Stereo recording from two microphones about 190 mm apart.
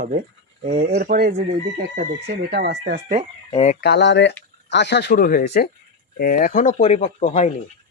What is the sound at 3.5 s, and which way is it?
Speech, 35° left (ahead or behind).